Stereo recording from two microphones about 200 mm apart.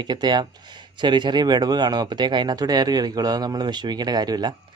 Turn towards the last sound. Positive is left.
turn(degrees=-20)  # may be behind; listen again after turning